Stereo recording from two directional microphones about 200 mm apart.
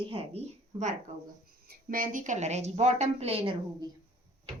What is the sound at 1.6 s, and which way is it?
A woman's voice, 45° right (ahead or behind).